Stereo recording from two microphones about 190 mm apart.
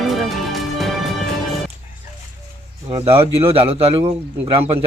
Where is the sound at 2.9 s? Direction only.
30° right (ahead or behind).